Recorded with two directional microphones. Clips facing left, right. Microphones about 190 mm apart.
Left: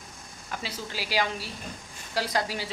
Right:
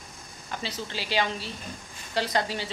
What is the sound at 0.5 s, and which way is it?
Speech, 5° left (ahead or behind).